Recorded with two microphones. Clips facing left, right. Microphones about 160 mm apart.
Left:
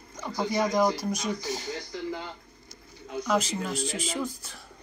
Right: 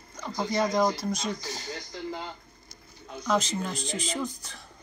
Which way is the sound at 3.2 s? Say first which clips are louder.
Even; 10° left (ahead or behind).